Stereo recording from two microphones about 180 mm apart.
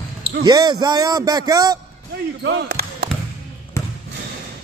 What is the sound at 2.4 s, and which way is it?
Basketball bounce, 70° right (ahead or behind).